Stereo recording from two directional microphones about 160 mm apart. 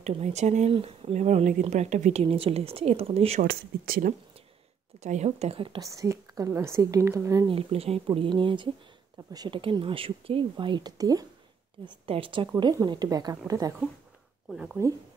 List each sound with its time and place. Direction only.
0.0 s speech: 45° right (ahead or behind)
2.2 s speech: 35° right (ahead or behind)
3.3 s speech: 65° right (ahead or behind)
5.0 s speech: 45° right (ahead or behind)
5.8 s a woman's voice: 20° right (ahead or behind)
7.4 s a woman's voice: 35° right (ahead or behind); by 13.7 s 20° right (ahead or behind)
14.5 s speech: 5° right (ahead or behind)